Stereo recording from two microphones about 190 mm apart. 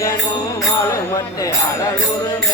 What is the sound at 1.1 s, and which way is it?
Speech, 15° left (ahead or behind).